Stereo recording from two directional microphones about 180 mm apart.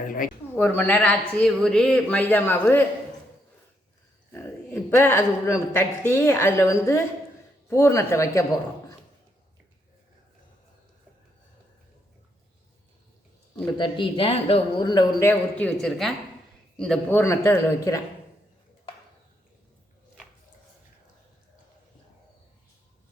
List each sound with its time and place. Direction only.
0.5 s speech: 10° left (ahead or behind)
4.3 s speech: 10° left (ahead or behind)
13.7 s a man's voice: 25° left (ahead or behind)